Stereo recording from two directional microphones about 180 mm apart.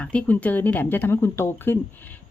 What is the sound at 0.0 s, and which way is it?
A woman's voice, 5° left (ahead or behind).